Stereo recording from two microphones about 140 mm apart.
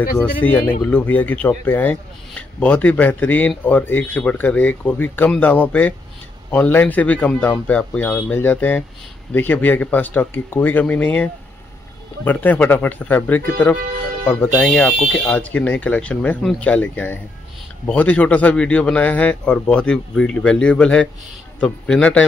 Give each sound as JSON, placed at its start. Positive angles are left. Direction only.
{"t": 0.2, "sound": "speech", "side_deg": 10}
{"t": 12.3, "sound": "speech", "side_deg": 10}